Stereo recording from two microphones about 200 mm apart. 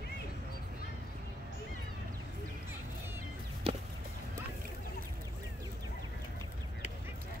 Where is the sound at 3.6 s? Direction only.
30° right (ahead or behind).